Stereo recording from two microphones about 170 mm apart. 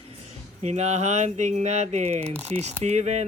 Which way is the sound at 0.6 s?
40° right (ahead or behind).